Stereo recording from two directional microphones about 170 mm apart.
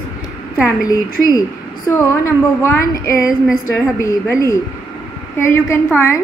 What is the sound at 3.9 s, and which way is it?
A woman's voice, 20° left (ahead or behind).